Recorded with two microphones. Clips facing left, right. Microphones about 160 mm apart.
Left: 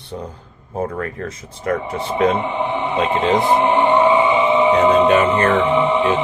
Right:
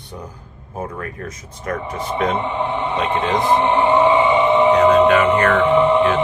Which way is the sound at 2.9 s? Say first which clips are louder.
Left 4 dB; 25° left (ahead or behind).